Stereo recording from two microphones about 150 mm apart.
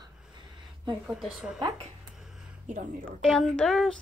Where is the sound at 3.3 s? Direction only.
5° left (ahead or behind).